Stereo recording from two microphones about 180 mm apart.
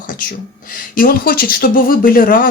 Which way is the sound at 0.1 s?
50° left (ahead or behind).